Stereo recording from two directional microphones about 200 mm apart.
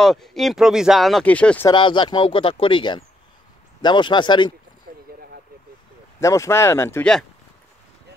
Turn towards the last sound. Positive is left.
turn(degrees=10)  # may be behind; listen again after turning